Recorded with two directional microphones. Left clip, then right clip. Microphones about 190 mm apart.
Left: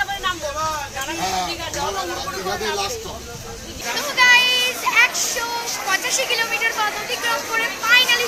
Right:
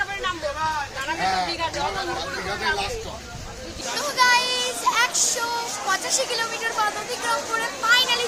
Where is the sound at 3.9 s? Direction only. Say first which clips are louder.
Left 5 dB; 10° right (ahead or behind).